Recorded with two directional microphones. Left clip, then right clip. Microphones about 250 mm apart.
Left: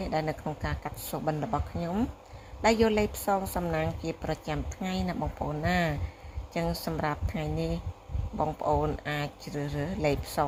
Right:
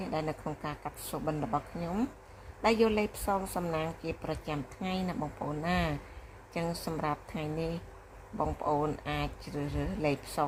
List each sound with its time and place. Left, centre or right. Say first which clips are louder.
0.0 s a woman's voice: left 4 dB; left